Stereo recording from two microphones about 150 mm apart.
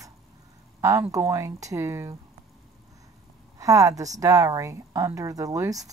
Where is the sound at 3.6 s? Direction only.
20° right (ahead or behind).